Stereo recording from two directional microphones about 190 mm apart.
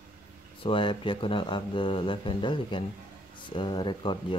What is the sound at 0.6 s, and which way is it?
Speech, 25° left (ahead or behind).